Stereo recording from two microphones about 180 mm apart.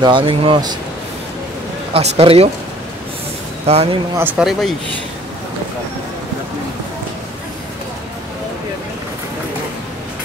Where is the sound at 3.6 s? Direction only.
35° right (ahead or behind).